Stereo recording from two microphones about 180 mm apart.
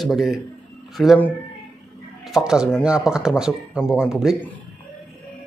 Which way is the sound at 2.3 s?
5° right (ahead or behind).